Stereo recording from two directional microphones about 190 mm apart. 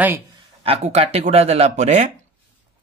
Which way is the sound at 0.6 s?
35° right (ahead or behind).